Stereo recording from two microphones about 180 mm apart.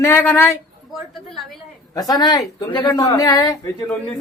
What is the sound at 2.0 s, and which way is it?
A woman's voice, 20° left (ahead or behind).